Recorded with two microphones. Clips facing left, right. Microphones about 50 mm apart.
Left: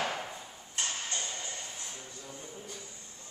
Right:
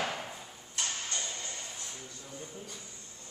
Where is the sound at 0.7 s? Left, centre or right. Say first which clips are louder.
Left 1 dB; left.